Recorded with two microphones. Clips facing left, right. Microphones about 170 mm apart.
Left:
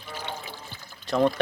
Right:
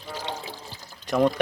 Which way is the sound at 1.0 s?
15° right (ahead or behind).